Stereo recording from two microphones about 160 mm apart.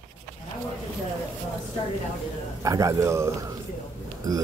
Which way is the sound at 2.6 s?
20° right (ahead or behind).